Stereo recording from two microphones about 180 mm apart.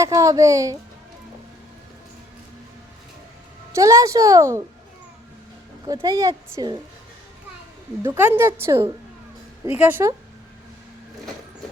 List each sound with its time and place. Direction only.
0.0 s speech: 20° right (ahead or behind)
3.7 s speech: 15° right (ahead or behind)
5.8 s speech: 20° right (ahead or behind)
8.0 s speech: 15° right (ahead or behind)